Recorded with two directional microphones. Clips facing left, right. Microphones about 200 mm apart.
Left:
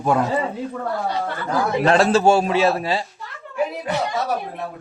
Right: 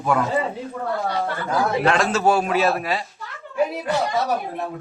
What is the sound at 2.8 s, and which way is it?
Speech, 30° left (ahead or behind).